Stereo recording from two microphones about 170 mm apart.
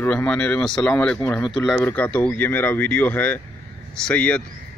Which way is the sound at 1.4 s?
25° left (ahead or behind).